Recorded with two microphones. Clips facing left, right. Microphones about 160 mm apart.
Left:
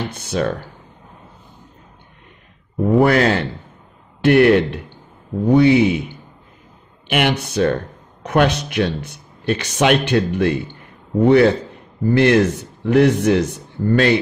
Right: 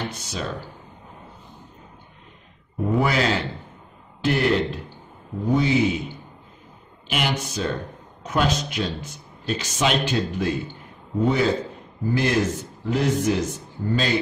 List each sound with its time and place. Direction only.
0.1 s speech: 55° left (ahead or behind)
3.0 s a man's voice: 55° left (ahead or behind)
7.1 s speech: 65° left (ahead or behind)